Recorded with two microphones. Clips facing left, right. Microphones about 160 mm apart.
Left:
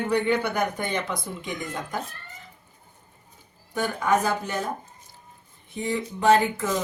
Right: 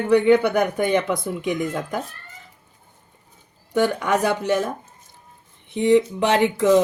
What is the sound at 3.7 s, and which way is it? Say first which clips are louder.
Speech: right 4 dB; 80° right.